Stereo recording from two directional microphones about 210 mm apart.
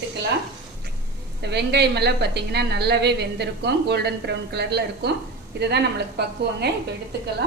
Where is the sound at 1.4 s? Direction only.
50° right (ahead or behind).